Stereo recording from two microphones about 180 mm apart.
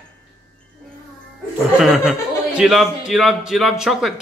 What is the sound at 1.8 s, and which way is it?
A man's voice, centre (ahead or behind).